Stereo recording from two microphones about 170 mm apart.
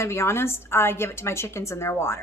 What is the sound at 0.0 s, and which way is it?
A woman's voice, 15° left (ahead or behind).